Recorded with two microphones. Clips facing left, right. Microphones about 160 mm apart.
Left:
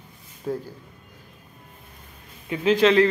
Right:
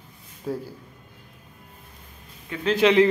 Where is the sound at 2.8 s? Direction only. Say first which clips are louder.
Right 1 dB; 15° right (ahead or behind).